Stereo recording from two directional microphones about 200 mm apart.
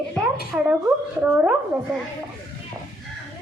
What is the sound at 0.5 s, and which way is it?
A woman's voice, 10° right (ahead or behind).